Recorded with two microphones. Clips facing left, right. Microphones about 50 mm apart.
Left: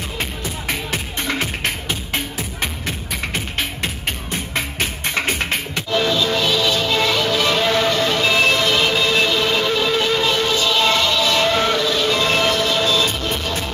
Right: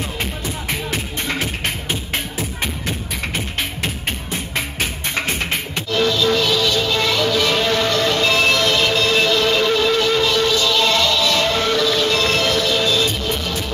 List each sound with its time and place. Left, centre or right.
5.9 s music: centre